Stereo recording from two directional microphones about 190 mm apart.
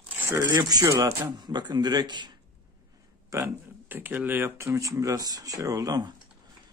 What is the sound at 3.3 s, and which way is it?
Speech, 10° right (ahead or behind).